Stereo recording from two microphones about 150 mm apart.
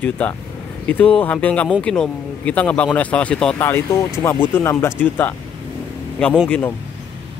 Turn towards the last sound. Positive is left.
turn(degrees=10)  # may be behind; listen again after turning